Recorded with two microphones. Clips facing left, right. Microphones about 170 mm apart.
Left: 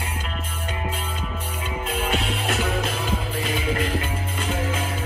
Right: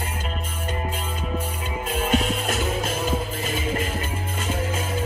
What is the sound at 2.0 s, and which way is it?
Music, 45° right (ahead or behind).